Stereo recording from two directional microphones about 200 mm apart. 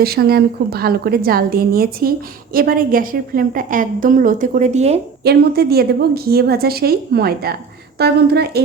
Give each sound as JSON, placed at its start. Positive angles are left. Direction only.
{"t": 0.0, "sound": "a woman's voice", "side_deg": -50}
{"t": 5.2, "sound": "a woman's voice", "side_deg": -50}